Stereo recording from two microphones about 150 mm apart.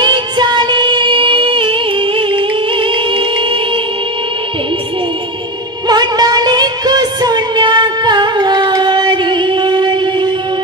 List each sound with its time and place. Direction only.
0.0 s music: 30° right (ahead or behind)
5.9 s music: 25° right (ahead or behind)